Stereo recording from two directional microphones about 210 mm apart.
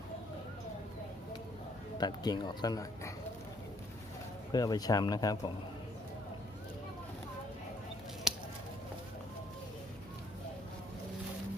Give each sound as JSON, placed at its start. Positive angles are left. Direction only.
{"t": 2.0, "sound": "speech", "side_deg": 20}
{"t": 4.5, "sound": "speech", "side_deg": 20}